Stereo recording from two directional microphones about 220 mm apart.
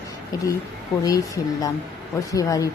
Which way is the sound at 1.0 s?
15° left (ahead or behind).